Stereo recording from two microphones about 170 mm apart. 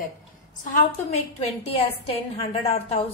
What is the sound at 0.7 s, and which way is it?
A woman's voice, 40° left (ahead or behind).